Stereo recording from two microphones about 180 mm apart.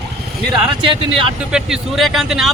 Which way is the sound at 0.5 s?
30° right (ahead or behind).